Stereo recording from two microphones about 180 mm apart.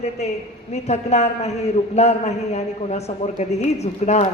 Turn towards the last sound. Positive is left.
turn(degrees=35)  # may be behind; listen again after turning